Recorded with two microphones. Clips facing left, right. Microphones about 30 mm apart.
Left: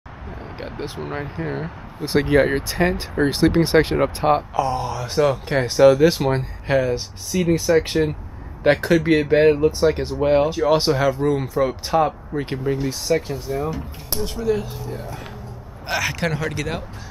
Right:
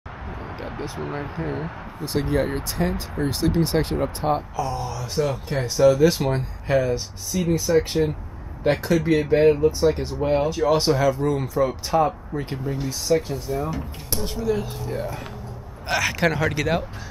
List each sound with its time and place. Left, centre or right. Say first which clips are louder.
0.6 s speech: left 3 dB; left
1.2 s speech: left 1 dB; centre
2.0 s speech: left 6 dB; left
5.9 s speech: left 2 dB; centre
8.6 s speech: left 4 dB; left
9.3 s speech: left 1 dB; left
12.8 s speech: left 1 dB; centre